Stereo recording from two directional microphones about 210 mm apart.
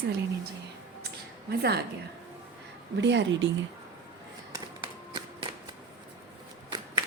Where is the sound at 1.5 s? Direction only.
50° right (ahead or behind).